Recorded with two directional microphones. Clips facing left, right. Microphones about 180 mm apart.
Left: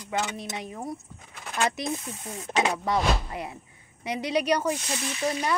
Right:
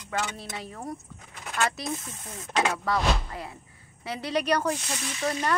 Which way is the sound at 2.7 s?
20° left (ahead or behind).